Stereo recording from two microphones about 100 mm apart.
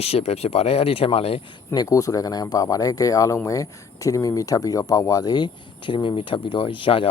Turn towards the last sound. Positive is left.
turn(degrees=60)  # may be behind; listen again after turning